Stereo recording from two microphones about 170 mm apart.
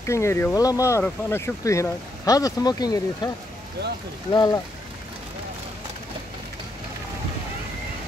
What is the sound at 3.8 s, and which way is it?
Speech, 85° right.